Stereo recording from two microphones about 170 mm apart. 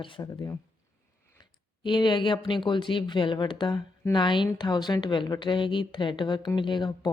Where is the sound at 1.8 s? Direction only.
25° left (ahead or behind).